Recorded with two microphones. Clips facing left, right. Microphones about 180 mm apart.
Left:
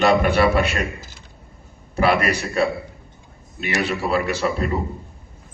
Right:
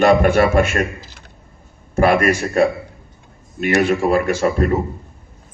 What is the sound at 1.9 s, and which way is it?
A man's voice, 50° right (ahead or behind).